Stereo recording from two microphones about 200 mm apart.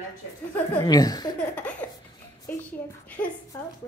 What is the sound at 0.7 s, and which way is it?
Speech, 20° left (ahead or behind).